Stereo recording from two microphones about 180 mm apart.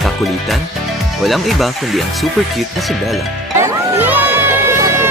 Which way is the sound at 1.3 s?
Centre (ahead or behind).